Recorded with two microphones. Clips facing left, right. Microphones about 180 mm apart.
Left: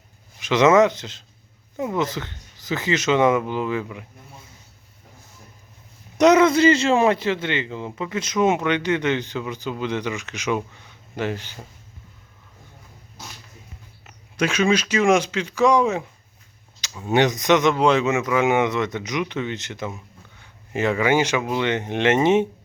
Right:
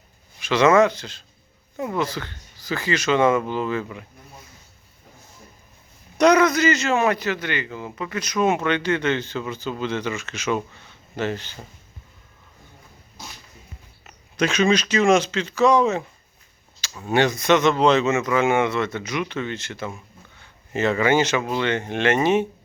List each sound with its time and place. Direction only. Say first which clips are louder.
0.3 s a man's voice: left 1 dB; 20° left (ahead or behind)
6.1 s a man's voice: left 2 dB; 20° left (ahead or behind)
14.1 s speech: right 1 dB; 10° left (ahead or behind)
17.1 s speech: left 1 dB; 20° left (ahead or behind)